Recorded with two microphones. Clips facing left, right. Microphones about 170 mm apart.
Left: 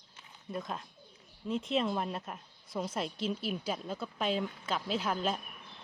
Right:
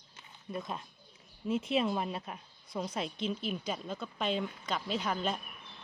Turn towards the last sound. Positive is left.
turn(degrees=5)  # may be behind; listen again after turning